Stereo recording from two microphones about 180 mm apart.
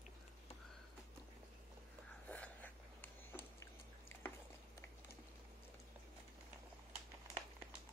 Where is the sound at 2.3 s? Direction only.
10° left (ahead or behind).